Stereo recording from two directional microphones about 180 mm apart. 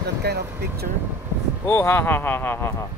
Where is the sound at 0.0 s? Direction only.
65° right (ahead or behind).